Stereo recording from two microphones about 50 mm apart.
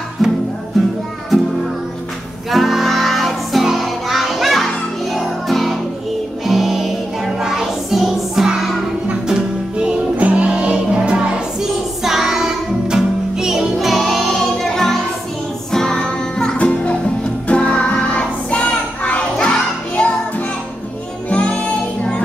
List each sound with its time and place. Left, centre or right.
0.2 s music: centre
2.5 s music: centre
9.3 s music: centre
10.1 s music: right
12.0 s music: centre
21.3 s music: left